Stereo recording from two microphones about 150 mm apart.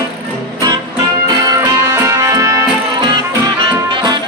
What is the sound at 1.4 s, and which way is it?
Music, 20° right (ahead or behind).